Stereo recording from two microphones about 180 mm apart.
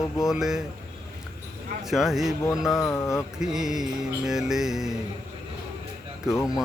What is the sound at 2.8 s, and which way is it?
Speech, 15° left (ahead or behind).